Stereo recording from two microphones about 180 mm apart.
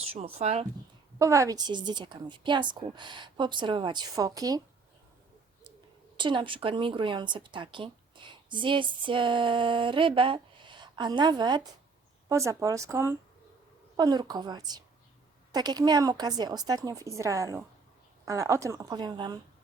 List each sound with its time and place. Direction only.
0.1 s speech: 35° right (ahead or behind)
1.2 s speech: 15° right (ahead or behind)
6.1 s a woman's voice: 25° right (ahead or behind)